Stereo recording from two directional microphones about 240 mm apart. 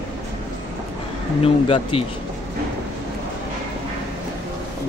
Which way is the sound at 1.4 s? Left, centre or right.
Left.